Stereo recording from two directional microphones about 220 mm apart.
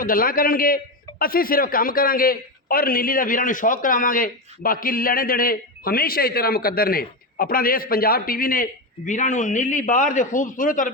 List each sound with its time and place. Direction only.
0.0 s a man's voice: 40° left (ahead or behind)